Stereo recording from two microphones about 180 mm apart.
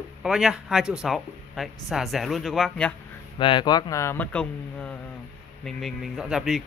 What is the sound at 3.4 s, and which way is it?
Speech, 25° left (ahead or behind).